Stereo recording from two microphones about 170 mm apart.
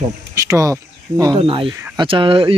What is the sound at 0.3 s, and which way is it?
Speech, 20° right (ahead or behind).